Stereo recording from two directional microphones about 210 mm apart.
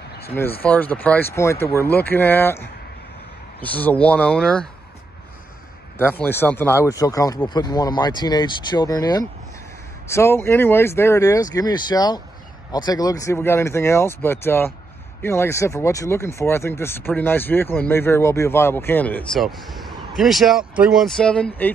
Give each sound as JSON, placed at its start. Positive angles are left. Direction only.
{"t": 0.3, "sound": "speech", "side_deg": 10}
{"t": 5.9, "sound": "speech", "side_deg": 10}